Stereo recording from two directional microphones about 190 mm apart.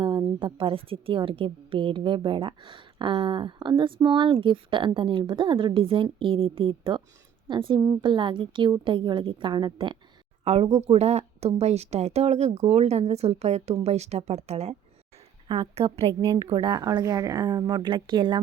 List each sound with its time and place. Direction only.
0.0 s a woman's voice: 25° right (ahead or behind)